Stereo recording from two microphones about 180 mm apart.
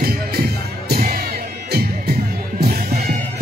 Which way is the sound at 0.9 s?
60° right (ahead or behind).